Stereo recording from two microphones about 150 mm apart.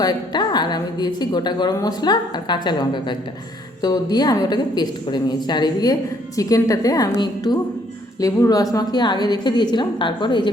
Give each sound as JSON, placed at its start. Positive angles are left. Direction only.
{"t": 0.0, "sound": "a woman's voice", "side_deg": 25}